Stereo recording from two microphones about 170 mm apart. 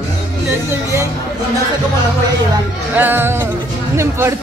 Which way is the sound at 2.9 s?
10° right (ahead or behind).